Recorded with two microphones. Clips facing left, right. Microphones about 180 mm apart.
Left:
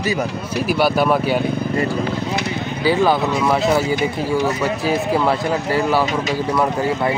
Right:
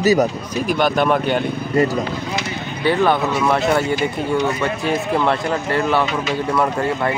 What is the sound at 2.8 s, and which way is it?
Speech, 5° left (ahead or behind).